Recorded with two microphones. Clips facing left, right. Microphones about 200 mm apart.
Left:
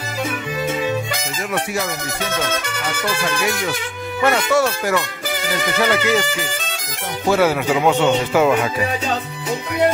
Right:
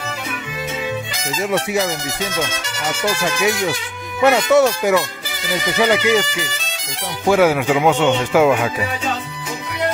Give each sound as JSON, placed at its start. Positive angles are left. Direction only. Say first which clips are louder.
{"t": 1.5, "sound": "speech", "louder": "right 4 dB", "side_deg": -20}
{"t": 4.2, "sound": "speech", "louder": "right 4 dB", "side_deg": -20}
{"t": 7.2, "sound": "speech", "louder": "right 2 dB", "side_deg": -10}